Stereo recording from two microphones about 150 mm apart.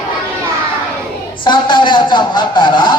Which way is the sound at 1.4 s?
30° left (ahead or behind).